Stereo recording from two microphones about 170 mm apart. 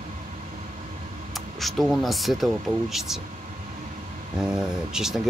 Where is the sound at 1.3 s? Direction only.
Centre (ahead or behind).